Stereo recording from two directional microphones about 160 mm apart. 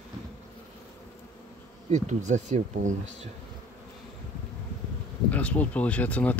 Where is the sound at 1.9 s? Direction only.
50° right (ahead or behind).